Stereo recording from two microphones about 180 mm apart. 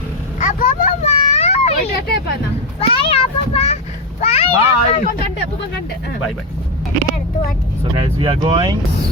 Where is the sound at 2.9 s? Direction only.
30° left (ahead or behind).